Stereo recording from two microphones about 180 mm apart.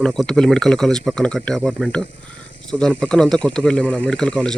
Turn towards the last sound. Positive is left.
turn(degrees=5)  # may be behind; listen again after turning